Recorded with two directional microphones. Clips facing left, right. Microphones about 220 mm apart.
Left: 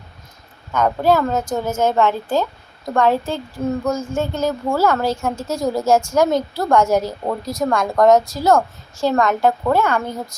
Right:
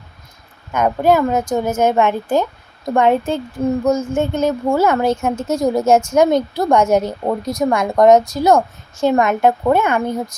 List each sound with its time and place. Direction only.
0.7 s a woman's voice: 20° right (ahead or behind)